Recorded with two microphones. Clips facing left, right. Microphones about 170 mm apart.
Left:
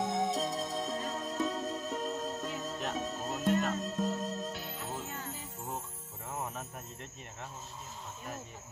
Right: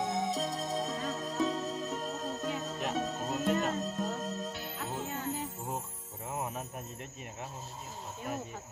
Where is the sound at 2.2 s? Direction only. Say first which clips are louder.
Right 2 dB; centre (ahead or behind).